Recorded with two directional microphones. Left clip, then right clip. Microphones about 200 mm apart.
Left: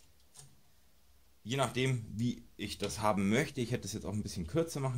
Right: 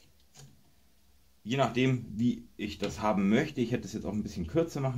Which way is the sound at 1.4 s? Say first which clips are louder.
Right 5 dB; 30° left (ahead or behind).